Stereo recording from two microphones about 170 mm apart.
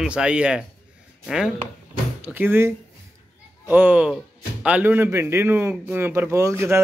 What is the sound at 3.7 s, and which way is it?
Speech, 10° right (ahead or behind).